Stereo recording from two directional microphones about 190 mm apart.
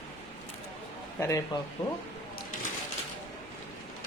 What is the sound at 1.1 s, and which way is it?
Speech, 15° left (ahead or behind).